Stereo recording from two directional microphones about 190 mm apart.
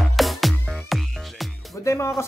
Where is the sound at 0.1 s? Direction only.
Centre (ahead or behind).